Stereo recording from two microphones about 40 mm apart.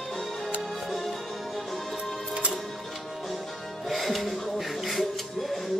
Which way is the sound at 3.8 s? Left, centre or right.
Centre.